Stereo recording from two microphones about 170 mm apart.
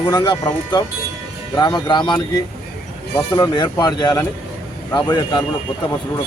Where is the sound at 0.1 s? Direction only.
25° left (ahead or behind).